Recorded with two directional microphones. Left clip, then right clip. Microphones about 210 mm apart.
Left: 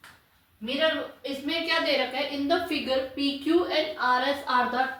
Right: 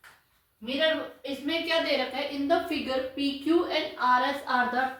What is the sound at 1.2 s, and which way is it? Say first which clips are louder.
A woman's voice: left 1 dB; 15° right (ahead or behind).